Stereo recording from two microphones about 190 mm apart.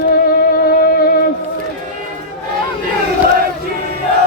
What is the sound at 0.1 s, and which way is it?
Music, 50° left (ahead or behind).